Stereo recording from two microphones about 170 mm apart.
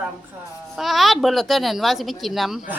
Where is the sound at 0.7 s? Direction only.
Centre (ahead or behind).